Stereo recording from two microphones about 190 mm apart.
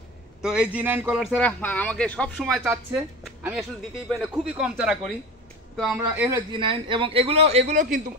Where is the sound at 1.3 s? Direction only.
10° left (ahead or behind).